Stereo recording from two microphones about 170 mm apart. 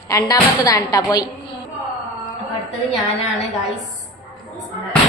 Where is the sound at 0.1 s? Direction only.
20° left (ahead or behind).